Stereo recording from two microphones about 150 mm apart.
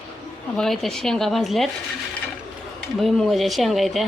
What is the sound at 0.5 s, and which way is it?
Speech, centre (ahead or behind).